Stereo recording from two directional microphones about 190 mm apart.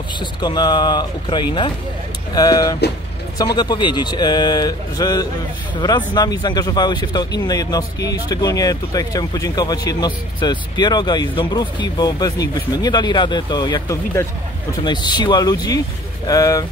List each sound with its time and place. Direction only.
0.2 s speech: 25° left (ahead or behind)